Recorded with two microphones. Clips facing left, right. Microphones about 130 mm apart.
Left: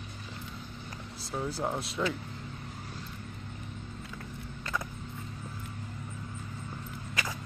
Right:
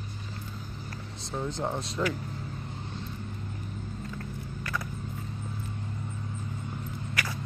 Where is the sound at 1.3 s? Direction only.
5° left (ahead or behind).